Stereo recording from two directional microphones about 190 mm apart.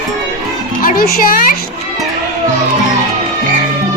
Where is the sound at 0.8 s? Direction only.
50° left (ahead or behind).